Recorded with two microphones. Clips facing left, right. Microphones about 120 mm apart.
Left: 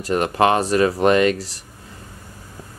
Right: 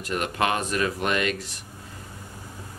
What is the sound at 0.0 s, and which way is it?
Speech, 35° left (ahead or behind).